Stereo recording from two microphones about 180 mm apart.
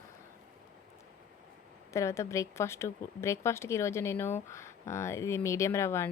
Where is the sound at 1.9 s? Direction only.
15° left (ahead or behind).